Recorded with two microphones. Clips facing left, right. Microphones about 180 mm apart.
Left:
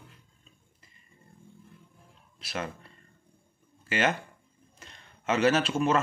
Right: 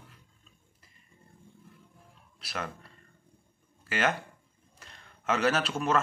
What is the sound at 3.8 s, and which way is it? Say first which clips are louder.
Speech: left 2 dB; centre (ahead or behind).